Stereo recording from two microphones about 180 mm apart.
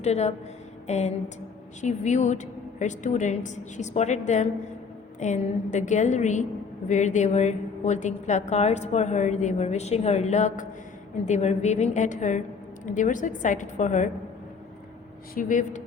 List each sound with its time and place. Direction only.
0.0 s a woman's voice: 35° left (ahead or behind)
15.4 s a woman's voice: 45° left (ahead or behind)